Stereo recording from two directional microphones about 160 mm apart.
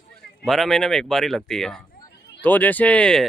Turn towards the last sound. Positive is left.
turn(degrees=5)  # may be behind; listen again after turning